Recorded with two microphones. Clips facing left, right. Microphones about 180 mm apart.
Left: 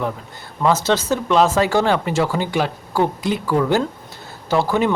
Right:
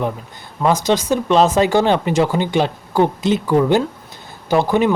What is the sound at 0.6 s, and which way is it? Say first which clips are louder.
Speech: right 1 dB; 15° right (ahead or behind).